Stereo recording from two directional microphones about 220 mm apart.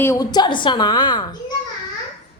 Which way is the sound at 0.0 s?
15° left (ahead or behind).